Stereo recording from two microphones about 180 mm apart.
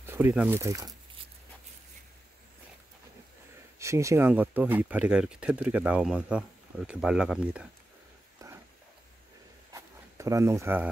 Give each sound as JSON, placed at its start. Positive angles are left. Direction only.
{"t": 0.0, "sound": "speech", "side_deg": -10}
{"t": 3.8, "sound": "speech", "side_deg": -15}
{"t": 8.4, "sound": "dog", "side_deg": -20}
{"t": 9.7, "sound": "a sound", "side_deg": -15}